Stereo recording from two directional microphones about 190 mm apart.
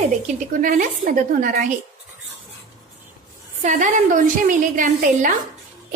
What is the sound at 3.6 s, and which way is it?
A woman's voice, 40° right (ahead or behind).